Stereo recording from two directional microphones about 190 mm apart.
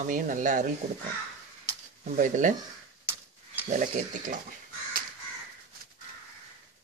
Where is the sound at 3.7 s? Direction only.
45° right (ahead or behind).